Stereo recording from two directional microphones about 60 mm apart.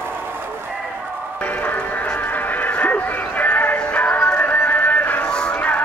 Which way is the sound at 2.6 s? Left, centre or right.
Left.